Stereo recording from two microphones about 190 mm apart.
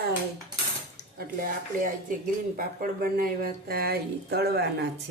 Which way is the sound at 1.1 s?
45° right (ahead or behind).